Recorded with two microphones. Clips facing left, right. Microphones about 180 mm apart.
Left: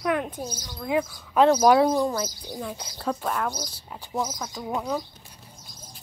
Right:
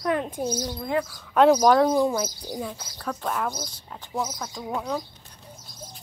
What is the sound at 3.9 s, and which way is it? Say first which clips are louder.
Speech: left 1 dB; 10° left (ahead or behind).